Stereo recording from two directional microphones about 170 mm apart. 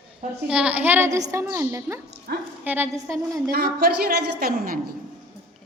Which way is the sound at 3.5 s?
70° right (ahead or behind).